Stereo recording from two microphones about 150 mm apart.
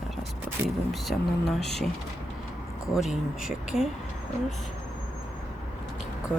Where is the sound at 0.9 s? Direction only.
Centre (ahead or behind).